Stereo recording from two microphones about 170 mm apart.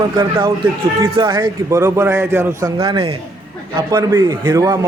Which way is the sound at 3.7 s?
20° right (ahead or behind).